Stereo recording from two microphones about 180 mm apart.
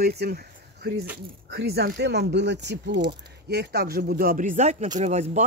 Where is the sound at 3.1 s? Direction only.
65° right (ahead or behind).